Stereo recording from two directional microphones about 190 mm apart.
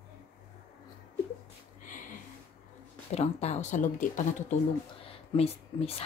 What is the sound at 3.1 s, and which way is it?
Speech, 35° left (ahead or behind).